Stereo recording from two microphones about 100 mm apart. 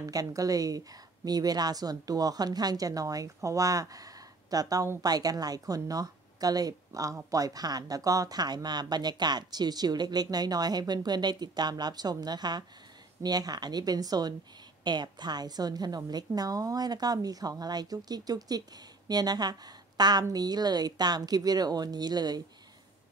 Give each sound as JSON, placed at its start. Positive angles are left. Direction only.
{"t": 0.1, "sound": "speech", "side_deg": -35}